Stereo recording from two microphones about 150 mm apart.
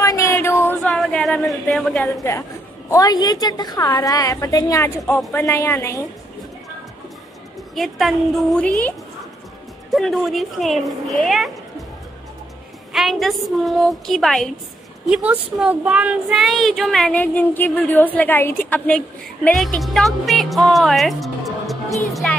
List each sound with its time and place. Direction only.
0.0 s a sound: 20° left (ahead or behind)
0.9 s a sound: 5° left (ahead or behind)
2.9 s a woman's voice: 25° left (ahead or behind)
7.7 s child singing: centre (ahead or behind)
9.9 s child singing: centre (ahead or behind)
12.9 s child singing: centre (ahead or behind)
22.1 s music: 5° left (ahead or behind)